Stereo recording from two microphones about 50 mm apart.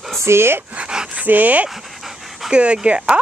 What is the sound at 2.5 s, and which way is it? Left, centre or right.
Speech, right.